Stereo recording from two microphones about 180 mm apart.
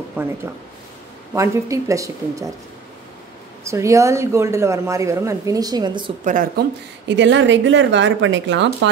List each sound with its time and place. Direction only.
0.2 s speech: 10° right (ahead or behind)
3.6 s speech: 15° right (ahead or behind)
6.2 s speech: 50° right (ahead or behind)
7.1 s a woman's voice: 90° right